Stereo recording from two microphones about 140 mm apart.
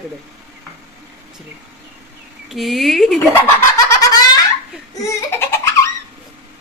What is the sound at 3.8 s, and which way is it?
Baby laughter, 30° left (ahead or behind).